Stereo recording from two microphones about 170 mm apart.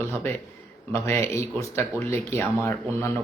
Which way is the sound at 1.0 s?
15° left (ahead or behind).